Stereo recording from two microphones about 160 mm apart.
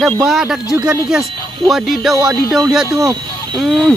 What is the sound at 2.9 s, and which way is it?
Speech, 20° right (ahead or behind).